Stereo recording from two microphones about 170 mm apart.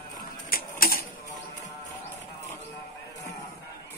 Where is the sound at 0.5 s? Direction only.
60° left (ahead or behind).